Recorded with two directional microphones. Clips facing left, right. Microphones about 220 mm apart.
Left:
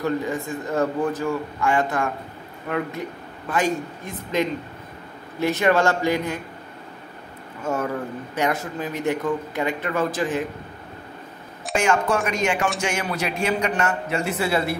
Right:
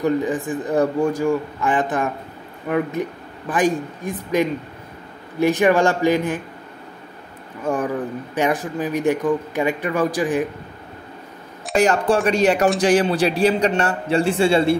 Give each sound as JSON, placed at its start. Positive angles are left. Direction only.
{"t": 0.0, "sound": "a man's voice", "side_deg": -15}
{"t": 8.4, "sound": "a man's voice", "side_deg": -15}
{"t": 11.7, "sound": "a man's voice", "side_deg": -35}